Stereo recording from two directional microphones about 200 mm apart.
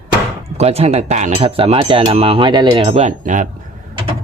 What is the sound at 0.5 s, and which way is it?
Speech, 30° right (ahead or behind).